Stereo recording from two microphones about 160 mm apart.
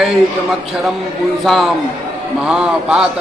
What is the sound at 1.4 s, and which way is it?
A man's voice, centre (ahead or behind).